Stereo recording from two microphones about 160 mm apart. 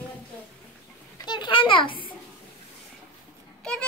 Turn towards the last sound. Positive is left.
turn(degrees=5)  # may be behind; listen again after turning